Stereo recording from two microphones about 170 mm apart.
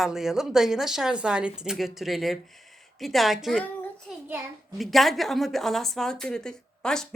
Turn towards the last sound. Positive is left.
turn(degrees=5)  # may be behind; listen again after turning